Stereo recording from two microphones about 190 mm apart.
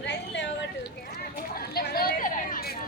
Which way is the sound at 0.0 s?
65° left (ahead or behind).